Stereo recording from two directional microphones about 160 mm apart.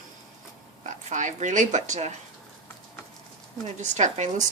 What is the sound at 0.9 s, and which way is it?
Speech, 50° right (ahead or behind).